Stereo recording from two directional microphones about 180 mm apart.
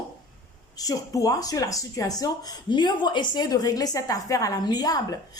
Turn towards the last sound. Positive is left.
turn(degrees=20)  # may be behind; listen again after turning